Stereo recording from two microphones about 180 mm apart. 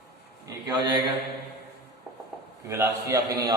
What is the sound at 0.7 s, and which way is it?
Speech, 25° right (ahead or behind).